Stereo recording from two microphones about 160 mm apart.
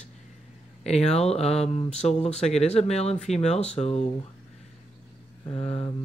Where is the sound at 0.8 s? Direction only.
40° left (ahead or behind).